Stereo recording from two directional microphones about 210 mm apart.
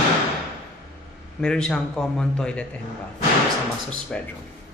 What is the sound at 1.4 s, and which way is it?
A man's voice, 5° left (ahead or behind).